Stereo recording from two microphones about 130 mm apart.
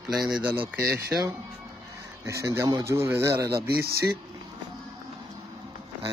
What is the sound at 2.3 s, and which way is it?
Speech, 25° right (ahead or behind).